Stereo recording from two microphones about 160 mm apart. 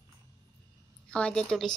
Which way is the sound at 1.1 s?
5° left (ahead or behind).